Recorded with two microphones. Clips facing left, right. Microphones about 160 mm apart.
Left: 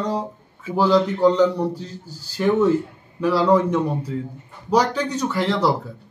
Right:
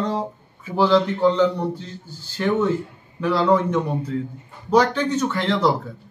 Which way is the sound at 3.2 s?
5° left (ahead or behind).